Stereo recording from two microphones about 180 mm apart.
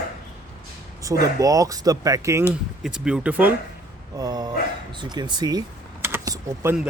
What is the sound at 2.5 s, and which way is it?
Speech, 5° right (ahead or behind).